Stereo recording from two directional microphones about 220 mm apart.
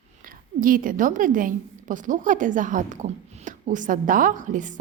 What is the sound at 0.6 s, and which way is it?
A woman's voice, 40° right (ahead or behind).